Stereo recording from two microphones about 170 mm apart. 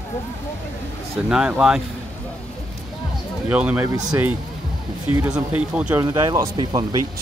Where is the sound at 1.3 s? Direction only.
5° right (ahead or behind).